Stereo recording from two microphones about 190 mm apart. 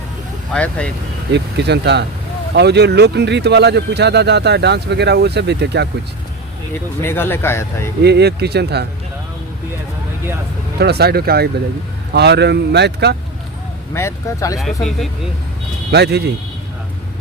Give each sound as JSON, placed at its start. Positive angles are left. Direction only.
{"t": 0.5, "sound": "speech", "side_deg": 5}
{"t": 1.3, "sound": "speech", "side_deg": -60}
{"t": 7.0, "sound": "speech", "side_deg": 10}
{"t": 8.0, "sound": "speech", "side_deg": -60}
{"t": 10.8, "sound": "speech", "side_deg": -60}
{"t": 13.9, "sound": "speech", "side_deg": 15}
{"t": 14.6, "sound": "speech", "side_deg": 0}
{"t": 15.9, "sound": "speech", "side_deg": -60}